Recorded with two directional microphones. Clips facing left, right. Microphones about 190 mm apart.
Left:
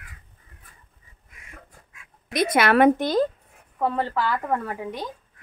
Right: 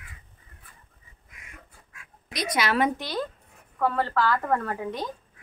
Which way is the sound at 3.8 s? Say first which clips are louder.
Even; 20° left (ahead or behind).